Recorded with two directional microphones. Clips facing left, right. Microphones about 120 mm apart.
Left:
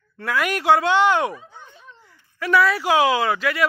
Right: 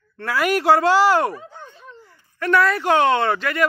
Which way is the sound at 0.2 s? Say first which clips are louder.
Right 3 dB; centre (ahead or behind).